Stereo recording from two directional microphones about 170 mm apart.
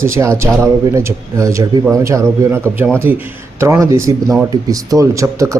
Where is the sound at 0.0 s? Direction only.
15° right (ahead or behind).